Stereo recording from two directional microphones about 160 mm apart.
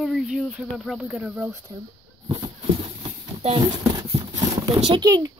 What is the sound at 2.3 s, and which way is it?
Horse, 30° right (ahead or behind).